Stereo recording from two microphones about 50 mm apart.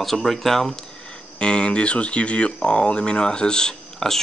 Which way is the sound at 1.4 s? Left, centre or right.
Centre.